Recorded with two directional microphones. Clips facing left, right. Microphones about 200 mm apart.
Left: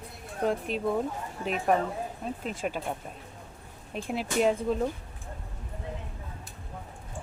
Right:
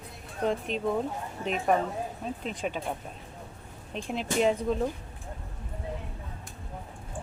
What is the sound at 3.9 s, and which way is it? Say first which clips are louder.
Speech: even; 5° left (ahead or behind).